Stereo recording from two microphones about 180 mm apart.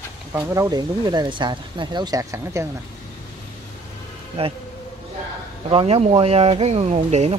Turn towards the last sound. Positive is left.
turn(degrees=-35)  # may be behind; listen again after turning